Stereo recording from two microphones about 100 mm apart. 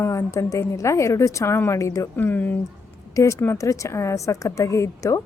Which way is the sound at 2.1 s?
20° left (ahead or behind).